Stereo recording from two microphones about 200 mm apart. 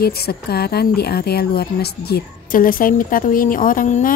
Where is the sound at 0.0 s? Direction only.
50° left (ahead or behind).